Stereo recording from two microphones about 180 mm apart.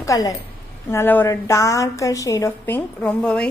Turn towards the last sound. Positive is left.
turn(degrees=5)  # may be behind; listen again after turning